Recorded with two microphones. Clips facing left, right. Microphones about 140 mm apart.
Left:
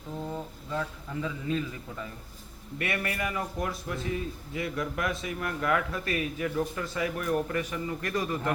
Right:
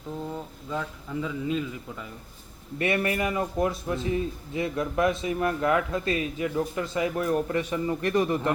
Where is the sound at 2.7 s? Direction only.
25° right (ahead or behind).